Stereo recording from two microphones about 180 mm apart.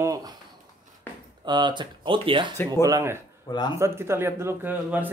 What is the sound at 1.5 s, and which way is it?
Speech, 25° right (ahead or behind).